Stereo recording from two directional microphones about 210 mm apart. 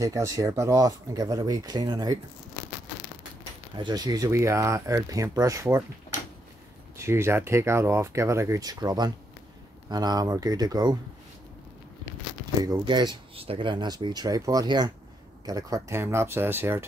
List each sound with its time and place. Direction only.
0.0 s speech: 15° right (ahead or behind)
3.7 s speech: 20° right (ahead or behind)
7.0 s speech: 10° right (ahead or behind)
12.6 s speech: 20° right (ahead or behind)